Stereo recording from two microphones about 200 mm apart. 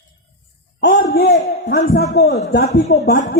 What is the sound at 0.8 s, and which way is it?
A man's voice, 55° left (ahead or behind).